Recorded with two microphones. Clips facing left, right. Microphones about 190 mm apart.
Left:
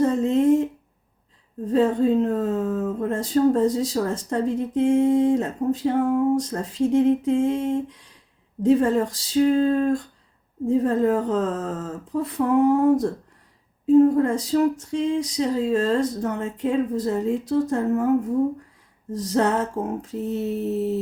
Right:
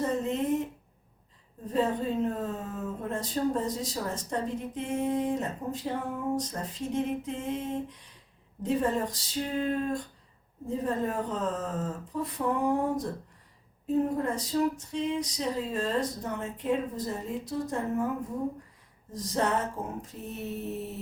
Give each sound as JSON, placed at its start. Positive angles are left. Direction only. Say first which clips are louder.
{"t": 0.0, "sound": "a sound", "louder": "left 10 dB", "side_deg": 75}
{"t": 1.7, "sound": "speech", "louder": "left 9 dB", "side_deg": 75}
{"t": 14.2, "sound": "speech", "louder": "left 8 dB", "side_deg": 75}
{"t": 19.1, "sound": "speech", "louder": "left 7 dB", "side_deg": 70}